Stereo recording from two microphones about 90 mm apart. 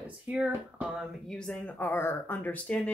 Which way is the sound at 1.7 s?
25° left (ahead or behind).